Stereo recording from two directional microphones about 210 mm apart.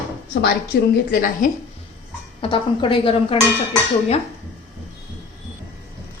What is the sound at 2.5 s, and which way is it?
Speech, 25° left (ahead or behind).